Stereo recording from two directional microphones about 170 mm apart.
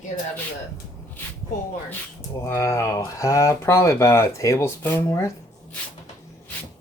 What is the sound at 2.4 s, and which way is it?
Speech, 20° left (ahead or behind).